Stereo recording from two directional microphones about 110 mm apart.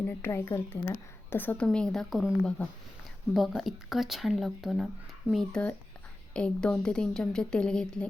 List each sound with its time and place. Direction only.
0.3 s a woman's voice: 25° left (ahead or behind)
1.6 s a woman's voice: 5° left (ahead or behind)